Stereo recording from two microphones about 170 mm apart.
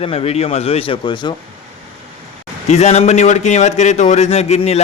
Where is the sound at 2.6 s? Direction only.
40° left (ahead or behind).